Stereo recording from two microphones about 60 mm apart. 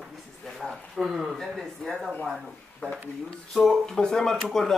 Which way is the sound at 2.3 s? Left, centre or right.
Centre.